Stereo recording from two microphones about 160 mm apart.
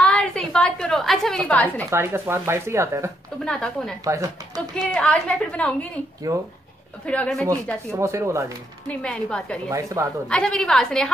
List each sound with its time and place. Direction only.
0.0 s a sound: 5° left (ahead or behind)
1.9 s speech: 15° right (ahead or behind)
3.4 s a woman's voice: 5° left (ahead or behind)
4.0 s speech: 20° right (ahead or behind)
4.7 s a woman's voice: 5° left (ahead or behind)
7.1 s a woman's voice: 5° left (ahead or behind)
7.9 s speech: 20° right (ahead or behind)
8.8 s a woman's voice: 5° left (ahead or behind)
9.7 s speech: 20° right (ahead or behind)
10.2 s a woman's voice: 5° left (ahead or behind)